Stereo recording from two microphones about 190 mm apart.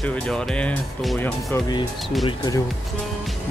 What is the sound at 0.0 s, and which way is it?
Speech, 5° left (ahead or behind).